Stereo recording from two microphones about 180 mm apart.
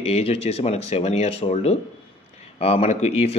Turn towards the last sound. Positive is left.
turn(degrees=35)  # may be behind; listen again after turning